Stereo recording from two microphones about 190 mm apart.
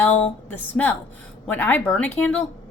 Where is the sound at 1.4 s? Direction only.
10° left (ahead or behind).